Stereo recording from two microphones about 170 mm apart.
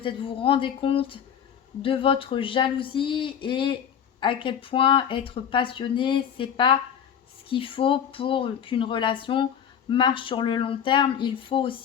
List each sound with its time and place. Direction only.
0.0 s speech: 30° left (ahead or behind)